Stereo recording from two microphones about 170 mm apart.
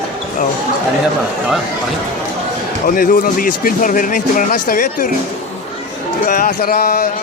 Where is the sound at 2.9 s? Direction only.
55° left (ahead or behind).